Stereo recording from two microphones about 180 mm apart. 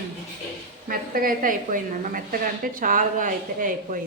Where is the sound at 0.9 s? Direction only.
50° right (ahead or behind).